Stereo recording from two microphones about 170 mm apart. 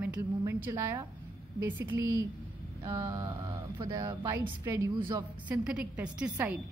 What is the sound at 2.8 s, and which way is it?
Mantra, 25° right (ahead or behind).